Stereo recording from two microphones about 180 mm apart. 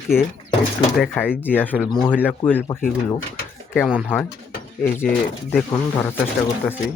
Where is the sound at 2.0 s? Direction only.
10° left (ahead or behind).